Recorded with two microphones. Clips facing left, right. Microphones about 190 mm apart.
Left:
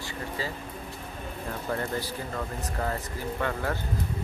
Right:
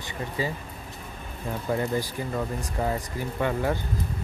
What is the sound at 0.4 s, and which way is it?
Speech, 15° right (ahead or behind).